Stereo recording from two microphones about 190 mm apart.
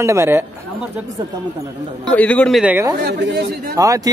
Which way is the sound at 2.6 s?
10° right (ahead or behind).